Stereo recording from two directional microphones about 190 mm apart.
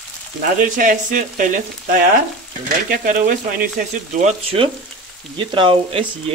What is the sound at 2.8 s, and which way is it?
Speech, 45° right (ahead or behind).